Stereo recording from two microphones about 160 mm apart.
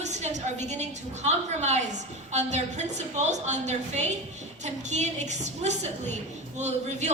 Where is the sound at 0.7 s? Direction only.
45° right (ahead or behind).